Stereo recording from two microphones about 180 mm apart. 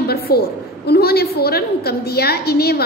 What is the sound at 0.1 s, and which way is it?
A woman's voice, 60° left (ahead or behind).